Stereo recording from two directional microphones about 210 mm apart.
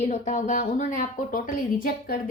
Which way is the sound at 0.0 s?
35° left (ahead or behind).